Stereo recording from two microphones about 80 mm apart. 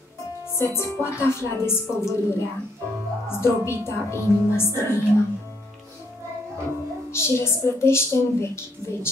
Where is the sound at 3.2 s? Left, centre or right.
Left.